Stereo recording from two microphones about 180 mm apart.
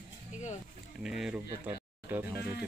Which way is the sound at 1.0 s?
5° right (ahead or behind).